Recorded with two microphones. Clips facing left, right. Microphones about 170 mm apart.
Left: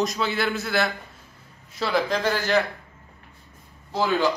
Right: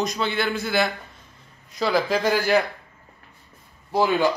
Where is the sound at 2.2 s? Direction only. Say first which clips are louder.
Right 2 dB; 10° right (ahead or behind).